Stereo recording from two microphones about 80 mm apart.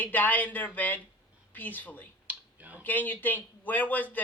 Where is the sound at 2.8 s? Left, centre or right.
Left.